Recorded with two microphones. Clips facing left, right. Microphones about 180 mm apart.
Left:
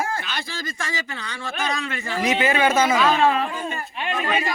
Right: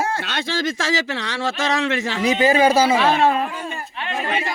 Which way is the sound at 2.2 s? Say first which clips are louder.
Right 4 dB; 35° right (ahead or behind).